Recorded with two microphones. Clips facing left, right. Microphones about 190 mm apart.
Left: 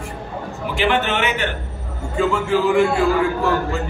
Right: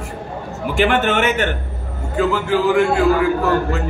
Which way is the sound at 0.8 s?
50° right (ahead or behind).